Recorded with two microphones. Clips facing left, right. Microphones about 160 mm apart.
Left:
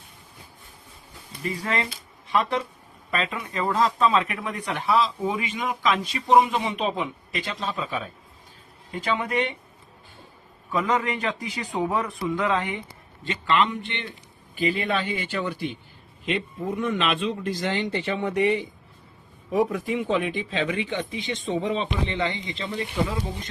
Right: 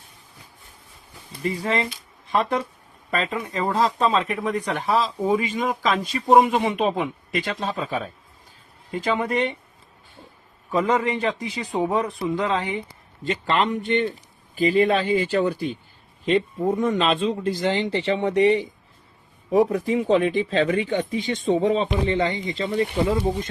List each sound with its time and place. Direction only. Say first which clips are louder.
1.4 s a man's voice: right 4 dB; 30° right (ahead or behind)
3.1 s speech: right 3 dB; 40° right (ahead or behind)
10.7 s a man's voice: right 3 dB; 30° right (ahead or behind)